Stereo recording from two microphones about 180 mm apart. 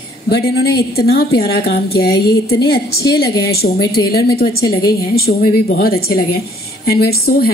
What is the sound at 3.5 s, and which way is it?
A man's voice, 60° left (ahead or behind).